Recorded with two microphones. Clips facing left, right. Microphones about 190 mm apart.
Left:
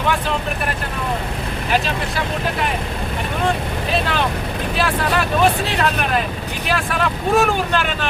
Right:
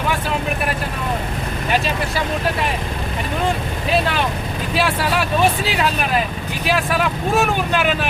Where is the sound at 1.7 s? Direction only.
Centre (ahead or behind).